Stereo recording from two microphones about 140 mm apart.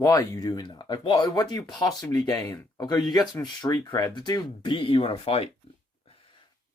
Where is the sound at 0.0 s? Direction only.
25° left (ahead or behind); by 5.5 s 45° left (ahead or behind).